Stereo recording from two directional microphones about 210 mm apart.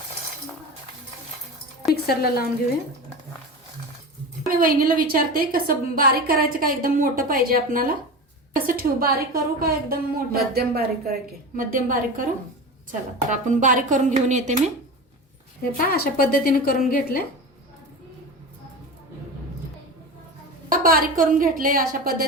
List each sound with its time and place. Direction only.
2.0 s a woman's voice: 45° left (ahead or behind)
4.4 s a woman's voice: 45° right (ahead or behind)
15.8 s a woman's voice: 45° left (ahead or behind)
20.7 s a woman's voice: 40° right (ahead or behind)